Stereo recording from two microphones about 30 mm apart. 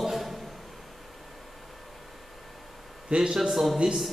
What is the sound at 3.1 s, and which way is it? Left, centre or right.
Speech, right.